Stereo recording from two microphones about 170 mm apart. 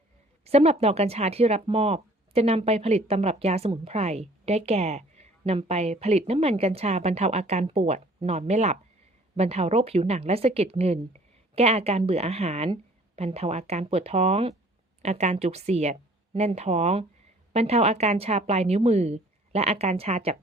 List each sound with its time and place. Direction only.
0.4 s speech: 35° right (ahead or behind)